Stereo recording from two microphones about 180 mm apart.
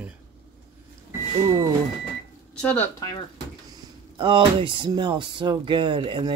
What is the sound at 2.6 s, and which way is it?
Speech, 5° left (ahead or behind).